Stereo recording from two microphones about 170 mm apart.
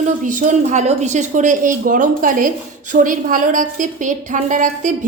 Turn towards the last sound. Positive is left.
turn(degrees=-50)  # may be behind; listen again after turning